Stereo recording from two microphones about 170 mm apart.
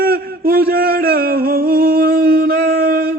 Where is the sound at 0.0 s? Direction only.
60° right (ahead or behind).